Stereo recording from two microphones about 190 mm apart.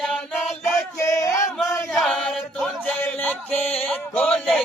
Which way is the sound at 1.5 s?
Centre (ahead or behind).